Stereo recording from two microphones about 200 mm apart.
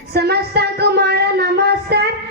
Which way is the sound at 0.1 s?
55° right (ahead or behind).